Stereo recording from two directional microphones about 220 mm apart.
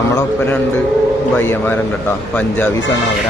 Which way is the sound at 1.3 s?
10° left (ahead or behind).